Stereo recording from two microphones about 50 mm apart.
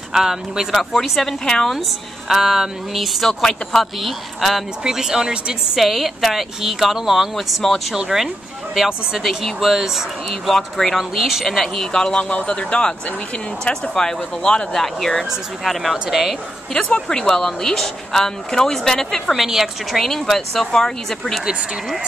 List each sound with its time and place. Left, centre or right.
0.1 s a woman's voice: centre
4.8 s a woman's voice: centre
7.9 s speech: centre
10.5 s speech: centre
11.0 s a woman's voice: centre
11.9 s a woman's voice: centre
16.7 s speech: centre
19.4 s a woman's voice: centre
20.0 s speech: centre